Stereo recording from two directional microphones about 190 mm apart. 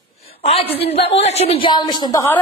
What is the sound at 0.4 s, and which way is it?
A woman's voice, 30° left (ahead or behind).